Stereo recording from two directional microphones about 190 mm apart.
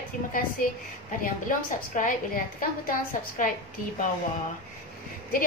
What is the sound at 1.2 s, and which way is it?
A woman's voice, 45° left (ahead or behind).